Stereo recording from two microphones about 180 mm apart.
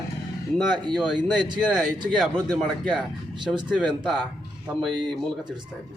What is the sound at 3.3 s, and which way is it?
Speech, 25° right (ahead or behind).